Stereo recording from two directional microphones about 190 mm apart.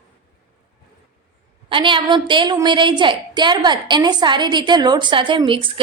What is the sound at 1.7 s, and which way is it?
A woman's voice, 25° right (ahead or behind).